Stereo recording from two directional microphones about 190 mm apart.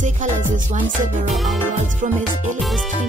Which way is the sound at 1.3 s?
Centre (ahead or behind).